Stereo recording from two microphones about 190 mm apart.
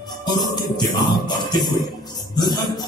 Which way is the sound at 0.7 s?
20° left (ahead or behind).